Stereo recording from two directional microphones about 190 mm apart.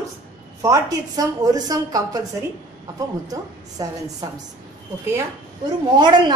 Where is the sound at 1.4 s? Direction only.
20° right (ahead or behind).